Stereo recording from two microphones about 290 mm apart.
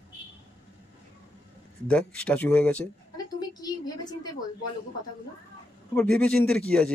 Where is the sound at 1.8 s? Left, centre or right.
Centre.